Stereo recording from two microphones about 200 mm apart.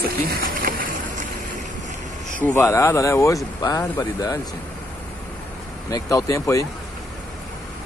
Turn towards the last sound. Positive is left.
turn(degrees=15)  # may be behind; listen again after turning